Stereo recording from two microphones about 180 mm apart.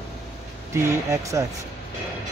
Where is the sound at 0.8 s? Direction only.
15° right (ahead or behind).